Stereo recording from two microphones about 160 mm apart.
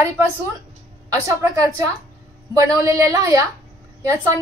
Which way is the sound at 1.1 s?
20° right (ahead or behind).